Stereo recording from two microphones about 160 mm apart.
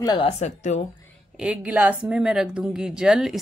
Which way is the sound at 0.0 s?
25° left (ahead or behind).